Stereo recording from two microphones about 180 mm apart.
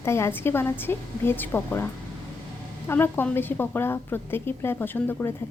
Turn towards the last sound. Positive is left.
turn(degrees=10)  # may be behind; listen again after turning